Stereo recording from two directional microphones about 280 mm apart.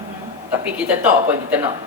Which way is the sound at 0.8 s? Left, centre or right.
Centre.